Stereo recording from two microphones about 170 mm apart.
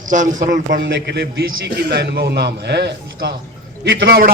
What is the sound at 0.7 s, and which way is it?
A man's voice, 80° right.